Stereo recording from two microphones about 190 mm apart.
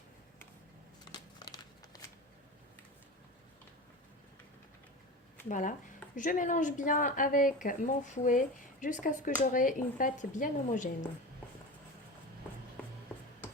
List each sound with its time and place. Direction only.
1.1 s crumpling: 20° left (ahead or behind)
5.5 s a woman's voice: 45° left (ahead or behind)